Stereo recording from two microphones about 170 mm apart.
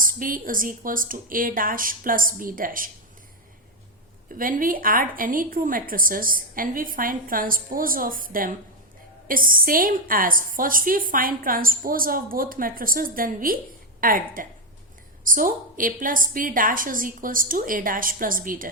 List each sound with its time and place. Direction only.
0.0 s a woman's voice: 55° right (ahead or behind)
4.3 s a woman's voice: 55° right (ahead or behind)